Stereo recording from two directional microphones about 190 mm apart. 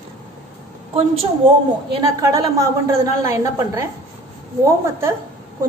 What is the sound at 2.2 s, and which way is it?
A woman's voice, 15° right (ahead or behind).